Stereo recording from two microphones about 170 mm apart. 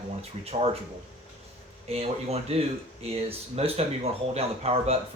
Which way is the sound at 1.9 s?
35° right (ahead or behind).